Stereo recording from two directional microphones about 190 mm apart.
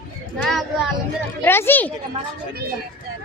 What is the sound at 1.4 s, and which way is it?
Speech, 10° left (ahead or behind).